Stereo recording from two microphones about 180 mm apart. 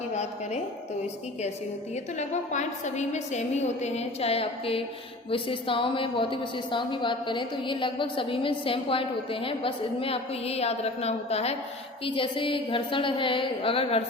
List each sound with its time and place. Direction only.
0.1 s a woman's voice: 40° left (ahead or behind)
2.1 s a woman's voice: 40° left (ahead or behind)